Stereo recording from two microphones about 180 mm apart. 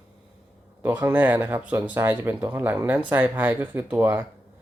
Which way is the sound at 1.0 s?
10° right (ahead or behind).